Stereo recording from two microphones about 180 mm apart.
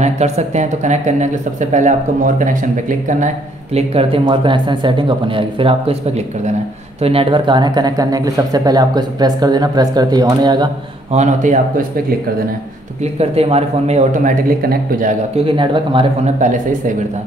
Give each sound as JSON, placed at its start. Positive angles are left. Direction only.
{"t": 0.0, "sound": "speech", "side_deg": -40}
{"t": 3.7, "sound": "speech", "side_deg": -35}
{"t": 11.1, "sound": "speech", "side_deg": -45}
{"t": 13.0, "sound": "speech", "side_deg": -35}
{"t": 15.3, "sound": "speech", "side_deg": -30}
{"t": 16.3, "sound": "speech", "side_deg": -45}